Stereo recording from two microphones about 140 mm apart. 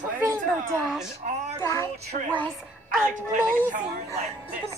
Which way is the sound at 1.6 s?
20° left (ahead or behind).